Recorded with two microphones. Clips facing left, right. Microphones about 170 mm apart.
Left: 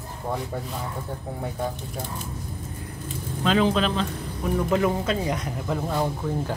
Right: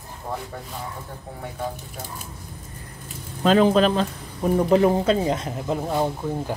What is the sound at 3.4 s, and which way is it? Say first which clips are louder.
Speech: right 5 dB; 45° right (ahead or behind).